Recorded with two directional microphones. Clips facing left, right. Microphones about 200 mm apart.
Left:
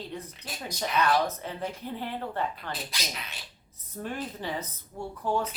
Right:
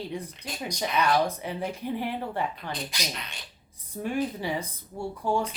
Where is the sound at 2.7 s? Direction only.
5° left (ahead or behind).